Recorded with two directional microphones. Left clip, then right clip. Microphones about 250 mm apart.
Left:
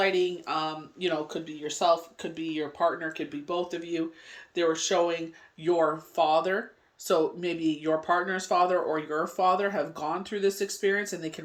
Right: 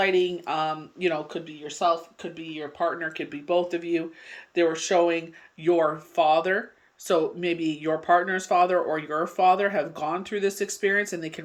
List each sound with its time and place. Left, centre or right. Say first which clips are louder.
0.0 s speech: right 3 dB; centre